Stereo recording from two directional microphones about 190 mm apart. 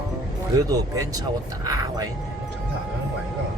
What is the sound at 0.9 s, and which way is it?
Speech, 20° right (ahead or behind).